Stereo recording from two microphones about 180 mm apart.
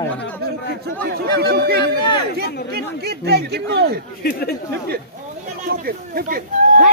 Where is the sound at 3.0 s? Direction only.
65° right (ahead or behind).